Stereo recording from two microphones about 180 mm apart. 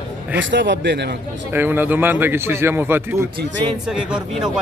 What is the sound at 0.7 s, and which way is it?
Speech, 75° right (ahead or behind).